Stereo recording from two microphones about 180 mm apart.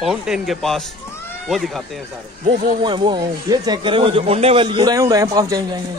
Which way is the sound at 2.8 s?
25° right (ahead or behind).